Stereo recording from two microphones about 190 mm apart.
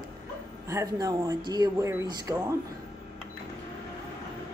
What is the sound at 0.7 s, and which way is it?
Speech, 15° right (ahead or behind).